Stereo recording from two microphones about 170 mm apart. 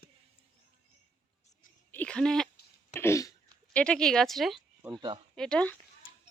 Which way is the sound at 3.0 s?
15° left (ahead or behind).